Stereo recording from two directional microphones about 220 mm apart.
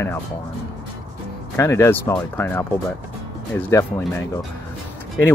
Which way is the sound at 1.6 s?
10° left (ahead or behind).